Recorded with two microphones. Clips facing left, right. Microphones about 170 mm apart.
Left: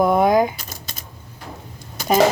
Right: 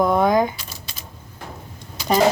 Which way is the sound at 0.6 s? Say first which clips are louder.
Left 2 dB; 45° left (ahead or behind).